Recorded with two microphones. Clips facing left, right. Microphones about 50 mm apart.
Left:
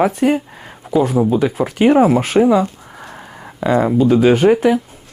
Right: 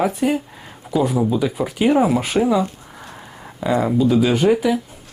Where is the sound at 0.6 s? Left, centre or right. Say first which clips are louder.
Left 5 dB; centre.